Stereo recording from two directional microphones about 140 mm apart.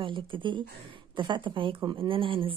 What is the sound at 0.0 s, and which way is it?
Speech, 35° right (ahead or behind).